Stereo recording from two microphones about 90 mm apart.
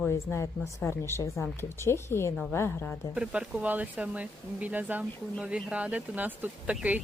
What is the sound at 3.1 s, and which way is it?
Speech, 10° right (ahead or behind).